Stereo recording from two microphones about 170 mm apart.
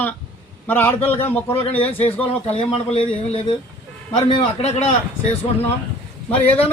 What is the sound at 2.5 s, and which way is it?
A man's voice, 35° left (ahead or behind).